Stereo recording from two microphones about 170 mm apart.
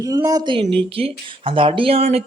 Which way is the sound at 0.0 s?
20° right (ahead or behind).